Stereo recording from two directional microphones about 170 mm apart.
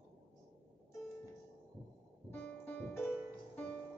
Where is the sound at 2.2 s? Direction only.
10° left (ahead or behind).